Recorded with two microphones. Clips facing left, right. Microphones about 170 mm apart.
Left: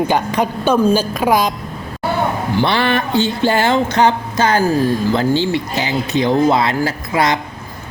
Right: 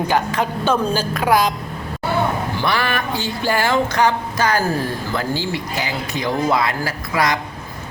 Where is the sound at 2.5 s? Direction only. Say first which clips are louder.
Left 5 dB; 25° left (ahead or behind).